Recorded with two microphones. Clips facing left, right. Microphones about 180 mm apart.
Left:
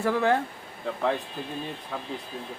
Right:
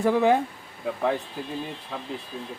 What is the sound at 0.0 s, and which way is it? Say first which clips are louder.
Speech: right 3 dB; 15° right (ahead or behind).